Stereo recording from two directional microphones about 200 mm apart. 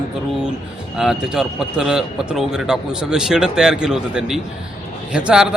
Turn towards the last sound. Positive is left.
turn(degrees=-5)  # may be behind; listen again after turning